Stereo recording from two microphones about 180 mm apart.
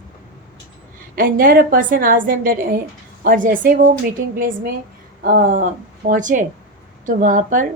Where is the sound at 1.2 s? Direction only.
55° right (ahead or behind).